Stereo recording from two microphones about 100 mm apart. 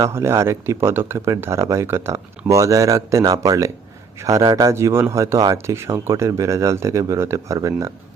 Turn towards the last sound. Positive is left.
turn(degrees=-30)  # may be behind; listen again after turning